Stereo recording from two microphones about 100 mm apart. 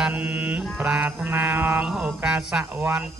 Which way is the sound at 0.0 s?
15° right (ahead or behind).